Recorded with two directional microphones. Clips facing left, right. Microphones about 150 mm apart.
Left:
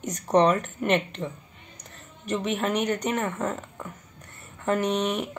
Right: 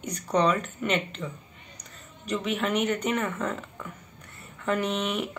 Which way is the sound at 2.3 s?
40° left (ahead or behind).